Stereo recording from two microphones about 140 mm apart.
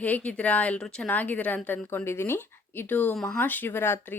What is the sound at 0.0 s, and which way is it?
Speech, 10° left (ahead or behind).